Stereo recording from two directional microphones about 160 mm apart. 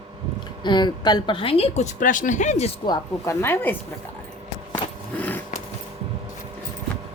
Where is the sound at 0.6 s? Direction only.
30° left (ahead or behind); by 2.7 s 45° left (ahead or behind).